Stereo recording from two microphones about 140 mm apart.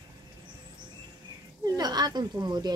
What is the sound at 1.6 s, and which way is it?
Speech, 30° right (ahead or behind).